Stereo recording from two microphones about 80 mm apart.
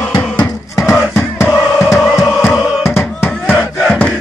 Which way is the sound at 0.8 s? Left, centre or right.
Centre.